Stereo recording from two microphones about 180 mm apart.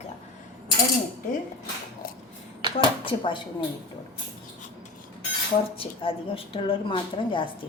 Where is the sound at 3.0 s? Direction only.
30° left (ahead or behind).